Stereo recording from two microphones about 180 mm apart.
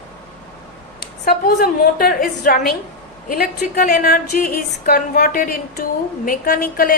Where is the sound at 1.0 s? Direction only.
60° left (ahead or behind).